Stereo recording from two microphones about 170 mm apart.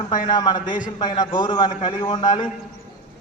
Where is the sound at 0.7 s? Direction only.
50° left (ahead or behind).